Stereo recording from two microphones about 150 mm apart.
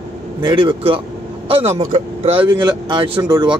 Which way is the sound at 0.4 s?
30° right (ahead or behind).